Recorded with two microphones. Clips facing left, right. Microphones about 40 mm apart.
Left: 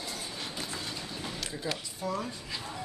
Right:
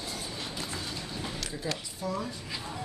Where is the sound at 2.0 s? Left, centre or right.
Left.